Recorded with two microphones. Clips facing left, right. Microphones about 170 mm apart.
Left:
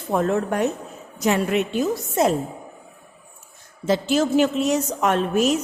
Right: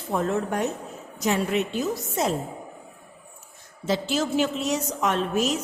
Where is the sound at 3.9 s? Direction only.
50° left (ahead or behind).